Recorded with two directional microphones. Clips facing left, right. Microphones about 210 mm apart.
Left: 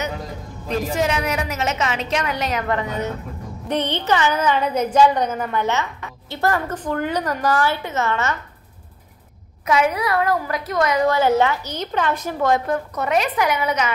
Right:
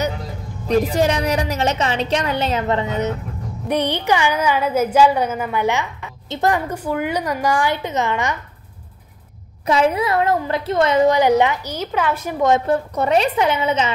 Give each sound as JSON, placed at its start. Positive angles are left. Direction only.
{"t": 0.7, "sound": "a woman's voice", "side_deg": -35}
{"t": 9.7, "sound": "a woman's voice", "side_deg": -30}